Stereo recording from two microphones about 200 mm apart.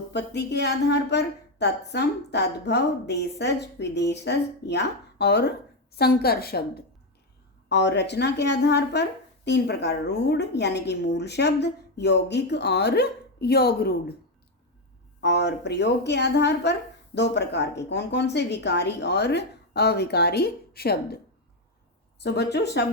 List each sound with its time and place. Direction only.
0.1 s speech: 60° left (ahead or behind)
15.2 s speech: 60° left (ahead or behind)
22.2 s speech: 55° left (ahead or behind)